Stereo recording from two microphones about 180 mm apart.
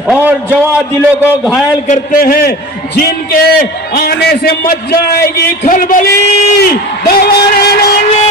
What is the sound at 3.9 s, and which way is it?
A man's voice, 60° left (ahead or behind).